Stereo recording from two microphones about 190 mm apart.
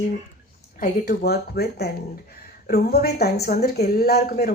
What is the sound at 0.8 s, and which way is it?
A woman's voice, 55° left (ahead or behind).